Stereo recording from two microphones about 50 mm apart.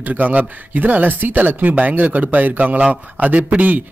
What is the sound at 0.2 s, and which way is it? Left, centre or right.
A man's voice, right.